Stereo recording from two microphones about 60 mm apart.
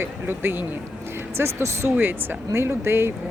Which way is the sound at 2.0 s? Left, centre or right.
Right.